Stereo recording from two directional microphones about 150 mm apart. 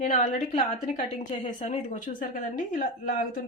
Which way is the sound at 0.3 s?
60° left (ahead or behind).